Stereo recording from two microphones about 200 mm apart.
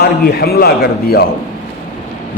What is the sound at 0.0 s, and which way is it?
A man's voice, 50° left (ahead or behind).